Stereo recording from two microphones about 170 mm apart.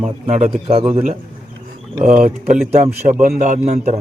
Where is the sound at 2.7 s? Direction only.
45° right (ahead or behind).